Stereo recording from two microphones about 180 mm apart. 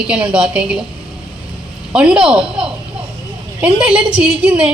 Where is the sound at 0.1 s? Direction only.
5° right (ahead or behind).